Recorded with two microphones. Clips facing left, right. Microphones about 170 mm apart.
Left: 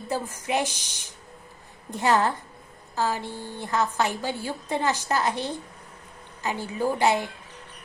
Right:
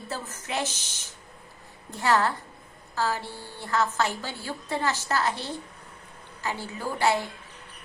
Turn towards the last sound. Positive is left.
turn(degrees=15)  # may be behind; listen again after turning